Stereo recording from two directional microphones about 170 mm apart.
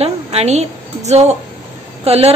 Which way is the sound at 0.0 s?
35° right (ahead or behind).